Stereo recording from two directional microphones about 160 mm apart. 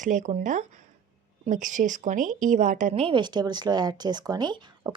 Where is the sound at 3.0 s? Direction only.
30° right (ahead or behind).